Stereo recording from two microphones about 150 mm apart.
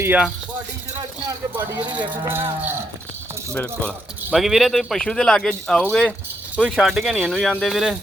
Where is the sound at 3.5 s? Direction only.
10° left (ahead or behind).